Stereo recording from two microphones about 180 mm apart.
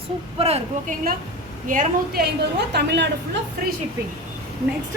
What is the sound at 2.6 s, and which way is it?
Speech, 70° right (ahead or behind).